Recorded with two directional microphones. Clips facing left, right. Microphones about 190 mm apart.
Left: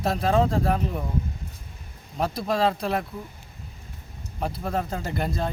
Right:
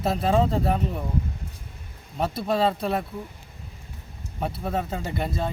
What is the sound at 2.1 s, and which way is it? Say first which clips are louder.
Speech: right 1 dB; 5° right (ahead or behind).